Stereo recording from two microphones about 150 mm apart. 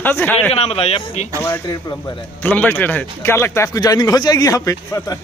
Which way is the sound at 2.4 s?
10° left (ahead or behind).